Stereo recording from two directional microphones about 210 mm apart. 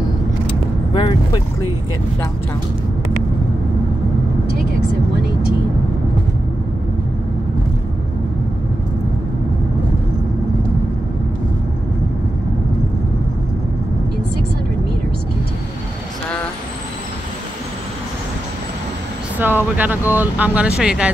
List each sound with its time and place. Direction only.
0.5 s vehicle: 25° left (ahead or behind)
19.3 s speech: 10° right (ahead or behind)